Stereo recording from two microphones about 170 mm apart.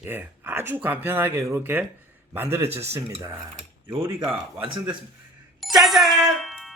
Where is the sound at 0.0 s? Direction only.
10° right (ahead or behind).